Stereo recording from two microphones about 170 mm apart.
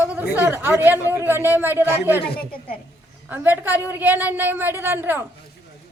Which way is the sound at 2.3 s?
65° left (ahead or behind).